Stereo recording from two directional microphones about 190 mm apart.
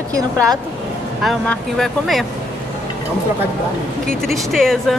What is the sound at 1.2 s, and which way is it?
Speech, centre (ahead or behind).